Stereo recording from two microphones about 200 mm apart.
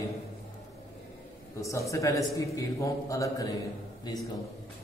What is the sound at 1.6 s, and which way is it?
A man's voice, 15° left (ahead or behind).